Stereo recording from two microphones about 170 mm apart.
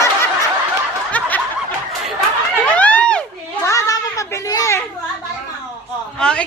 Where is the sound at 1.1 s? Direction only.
10° left (ahead or behind).